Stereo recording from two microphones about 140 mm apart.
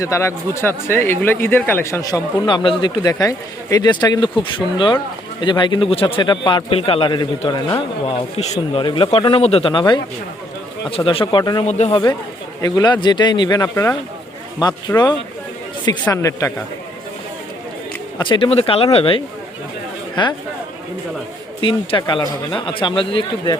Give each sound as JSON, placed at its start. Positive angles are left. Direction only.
{"t": 0.0, "sound": "a man's voice", "side_deg": 20}
{"t": 11.6, "sound": "speech", "side_deg": 50}
{"t": 12.6, "sound": "a man's voice", "side_deg": 30}
{"t": 16.0, "sound": "speech", "side_deg": 20}
{"t": 18.2, "sound": "a man's voice", "side_deg": 35}
{"t": 21.6, "sound": "a man's voice", "side_deg": 35}